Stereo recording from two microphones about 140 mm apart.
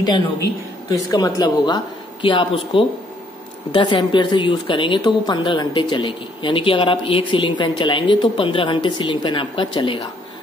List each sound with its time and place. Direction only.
0.0 s speech: 30° left (ahead or behind)